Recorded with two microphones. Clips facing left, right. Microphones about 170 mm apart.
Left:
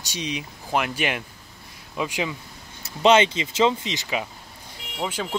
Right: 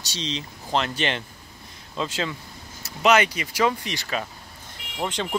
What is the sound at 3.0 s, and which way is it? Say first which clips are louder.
Speech: left 2 dB; 25° left (ahead or behind).